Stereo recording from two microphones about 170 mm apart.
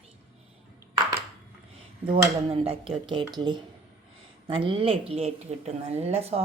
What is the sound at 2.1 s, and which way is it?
A woman's voice, 35° right (ahead or behind).